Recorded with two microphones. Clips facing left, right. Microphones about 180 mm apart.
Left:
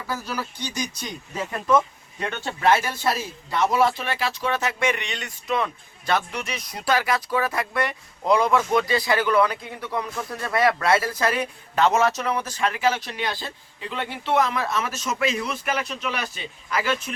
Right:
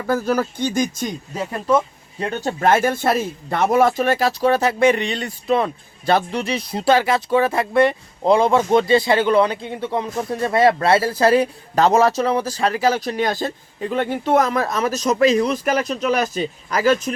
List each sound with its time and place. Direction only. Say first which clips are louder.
0.1 s speech: right 11 dB; 50° right (ahead or behind)
1.5 s speech: right 2 dB; 30° right (ahead or behind)